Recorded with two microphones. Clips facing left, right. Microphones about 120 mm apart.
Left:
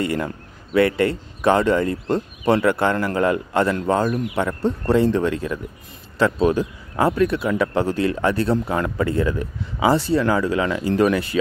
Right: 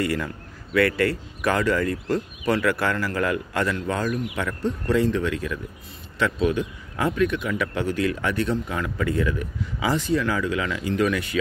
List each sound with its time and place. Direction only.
0.0 s speech: 25° left (ahead or behind)